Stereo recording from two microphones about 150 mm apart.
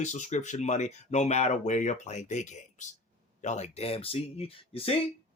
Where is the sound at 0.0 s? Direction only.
50° left (ahead or behind).